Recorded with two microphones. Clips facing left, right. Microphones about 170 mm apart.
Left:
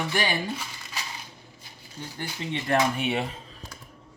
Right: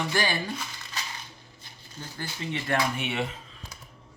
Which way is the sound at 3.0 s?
35° left (ahead or behind).